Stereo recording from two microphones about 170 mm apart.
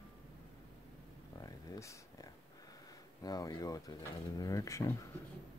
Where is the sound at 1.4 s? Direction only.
20° left (ahead or behind).